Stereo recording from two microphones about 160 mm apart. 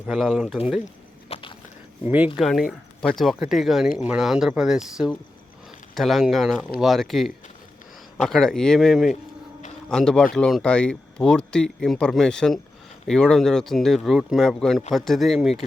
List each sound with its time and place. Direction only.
0.1 s speech: 5° right (ahead or behind)
1.3 s a sound: 30° left (ahead or behind)
2.0 s speech: 10° right (ahead or behind)